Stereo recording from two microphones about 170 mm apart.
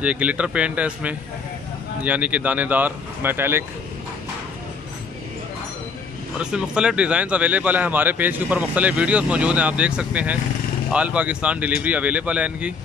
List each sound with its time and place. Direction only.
0.0 s speech: 5° right (ahead or behind)
6.4 s speech: 5° right (ahead or behind)